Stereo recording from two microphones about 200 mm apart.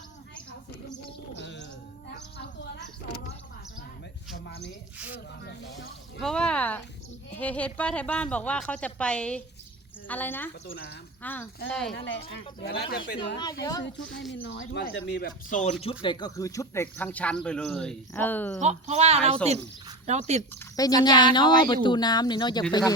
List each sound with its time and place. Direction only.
2.0 s a sound: 60° left (ahead or behind)
4.4 s a sound: 60° left (ahead or behind)
4.9 s speech: 5° right (ahead or behind)
5.4 s speech: 60° left (ahead or behind)
6.1 s speech: 5° left (ahead or behind)
10.7 s speech: 55° left (ahead or behind)
11.2 s speech: 10° left (ahead or behind)
12.6 s speech: 55° left (ahead or behind)
13.4 s speech: 20° left (ahead or behind)
13.8 s speech: 65° left (ahead or behind)
15.4 s speech: 40° left (ahead or behind)
15.8 s speech: 25° left (ahead or behind); by 18.6 s 10° left (ahead or behind)
18.6 s speech: 35° right (ahead or behind)
20.5 s speech: 15° left (ahead or behind)